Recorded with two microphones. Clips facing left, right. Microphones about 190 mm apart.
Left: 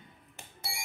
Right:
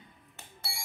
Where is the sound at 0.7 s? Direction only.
15° left (ahead or behind).